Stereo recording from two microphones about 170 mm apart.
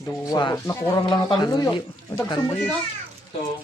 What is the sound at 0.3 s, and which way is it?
Speech, 25° left (ahead or behind).